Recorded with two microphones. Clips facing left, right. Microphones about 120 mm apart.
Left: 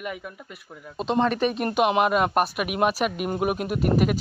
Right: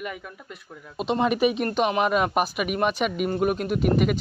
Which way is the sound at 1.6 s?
10° left (ahead or behind).